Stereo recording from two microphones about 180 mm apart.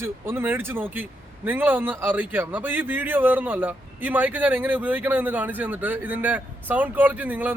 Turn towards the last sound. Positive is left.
turn(degrees=-10)  # may be behind; listen again after turning